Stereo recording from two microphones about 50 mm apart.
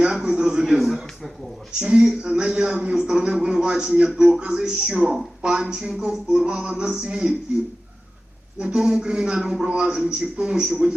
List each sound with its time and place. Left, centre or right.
0.0 s a sound: centre
0.8 s a sound: centre
1.8 s a man's voice: centre
6.0 s music: centre
8.5 s music: centre
9.6 s a man's voice: right
10.3 s music: centre